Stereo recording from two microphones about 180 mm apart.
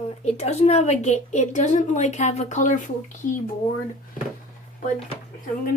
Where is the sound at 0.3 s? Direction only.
40° left (ahead or behind).